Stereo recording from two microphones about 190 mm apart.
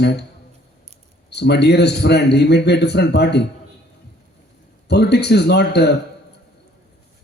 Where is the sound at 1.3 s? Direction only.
60° left (ahead or behind).